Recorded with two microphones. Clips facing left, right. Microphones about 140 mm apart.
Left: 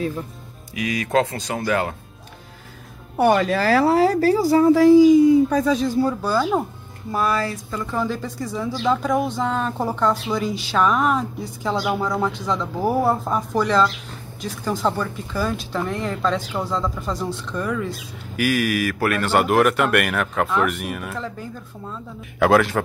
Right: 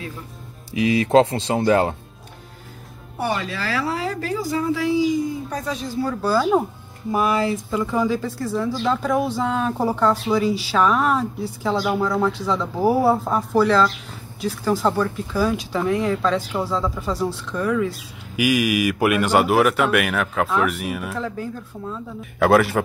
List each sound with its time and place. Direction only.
0.7 s speech: 30° right (ahead or behind)
3.2 s speech: 50° left (ahead or behind)
6.2 s speech: 5° right (ahead or behind)
7.1 s speech: 15° right (ahead or behind)
7.7 s speech: 5° right (ahead or behind)